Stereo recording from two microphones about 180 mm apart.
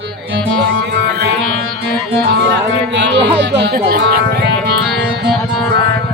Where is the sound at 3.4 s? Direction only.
90° right.